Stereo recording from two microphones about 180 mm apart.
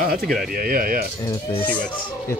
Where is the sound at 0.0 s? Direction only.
55° right (ahead or behind).